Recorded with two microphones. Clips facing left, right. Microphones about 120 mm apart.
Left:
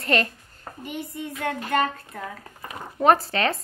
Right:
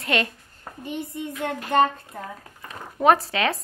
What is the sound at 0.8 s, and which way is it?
Child singing, 25° right (ahead or behind).